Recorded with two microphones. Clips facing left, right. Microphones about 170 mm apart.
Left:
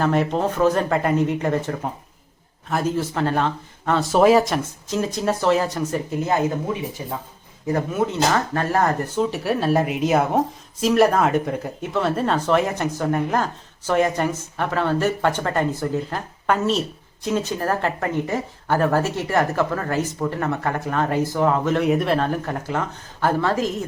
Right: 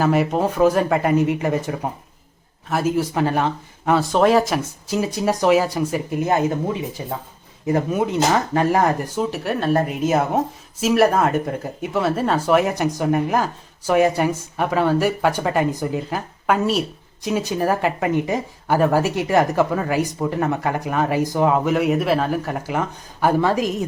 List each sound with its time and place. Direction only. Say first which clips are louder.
0.0 s speech: right 2 dB; 5° right (ahead or behind)
4.0 s speech: left 3 dB; 5° left (ahead or behind)
7.7 s speech: right 2 dB; 15° right (ahead or behind)
9.4 s speech: right 1 dB; centre (ahead or behind); by 23.8 s 15° right (ahead or behind)